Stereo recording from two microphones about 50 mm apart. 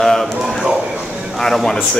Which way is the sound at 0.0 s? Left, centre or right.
Centre.